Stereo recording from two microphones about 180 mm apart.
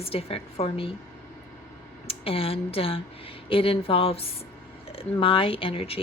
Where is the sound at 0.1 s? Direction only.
30° left (ahead or behind).